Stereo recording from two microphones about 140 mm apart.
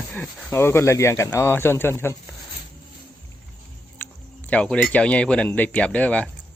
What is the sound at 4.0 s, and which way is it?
Speech, 10° left (ahead or behind).